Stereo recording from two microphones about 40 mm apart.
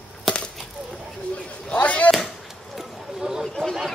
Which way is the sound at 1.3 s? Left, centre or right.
Left.